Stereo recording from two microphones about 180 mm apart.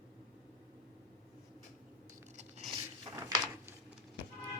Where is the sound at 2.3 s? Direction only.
40° right (ahead or behind).